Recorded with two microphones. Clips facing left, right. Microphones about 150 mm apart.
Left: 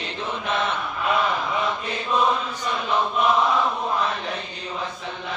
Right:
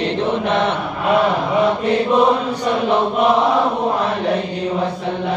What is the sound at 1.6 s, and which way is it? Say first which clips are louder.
Mantra: right 11 dB; 65° right (ahead or behind).